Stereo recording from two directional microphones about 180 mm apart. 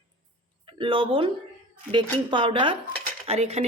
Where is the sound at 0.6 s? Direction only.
30° right (ahead or behind).